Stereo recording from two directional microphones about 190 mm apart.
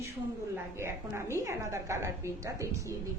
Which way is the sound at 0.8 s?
15° right (ahead or behind).